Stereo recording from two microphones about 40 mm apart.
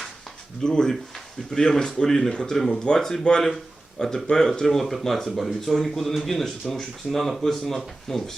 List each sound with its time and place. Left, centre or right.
0.6 s speech: centre
3.4 s speech: centre